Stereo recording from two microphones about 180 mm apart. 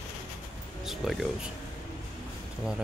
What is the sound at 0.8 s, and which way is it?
Speech, centre (ahead or behind).